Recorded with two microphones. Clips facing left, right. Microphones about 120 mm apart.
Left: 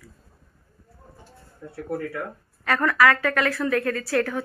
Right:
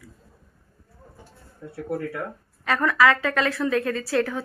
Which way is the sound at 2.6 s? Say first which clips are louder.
Even; 20° right (ahead or behind).